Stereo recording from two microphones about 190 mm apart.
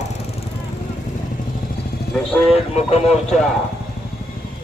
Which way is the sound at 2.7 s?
35° left (ahead or behind).